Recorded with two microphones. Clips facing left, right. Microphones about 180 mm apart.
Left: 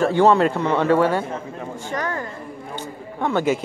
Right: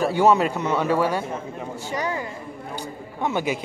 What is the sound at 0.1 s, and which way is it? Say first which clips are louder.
A woman's voice: left 3 dB; 10° right (ahead or behind).